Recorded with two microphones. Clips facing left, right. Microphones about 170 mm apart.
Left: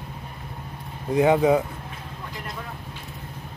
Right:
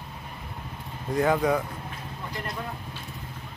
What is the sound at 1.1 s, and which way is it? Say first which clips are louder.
Speech: left 5 dB; 20° left (ahead or behind).